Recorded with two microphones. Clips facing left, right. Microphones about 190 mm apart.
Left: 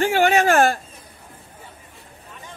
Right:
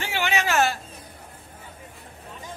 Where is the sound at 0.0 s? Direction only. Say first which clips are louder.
Left 9 dB; 50° left (ahead or behind).